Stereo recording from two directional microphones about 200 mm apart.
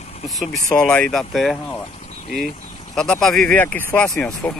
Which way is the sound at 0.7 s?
5° left (ahead or behind).